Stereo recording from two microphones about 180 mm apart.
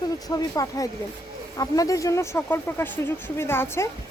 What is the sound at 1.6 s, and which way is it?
Speech, 20° left (ahead or behind).